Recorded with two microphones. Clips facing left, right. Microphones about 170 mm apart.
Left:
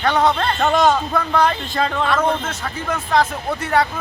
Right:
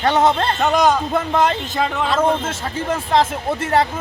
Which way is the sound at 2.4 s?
30° right (ahead or behind).